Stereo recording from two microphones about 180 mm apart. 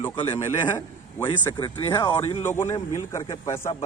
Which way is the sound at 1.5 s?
25° left (ahead or behind).